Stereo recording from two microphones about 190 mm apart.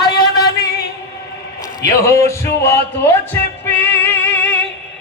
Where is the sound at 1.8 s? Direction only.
15° left (ahead or behind).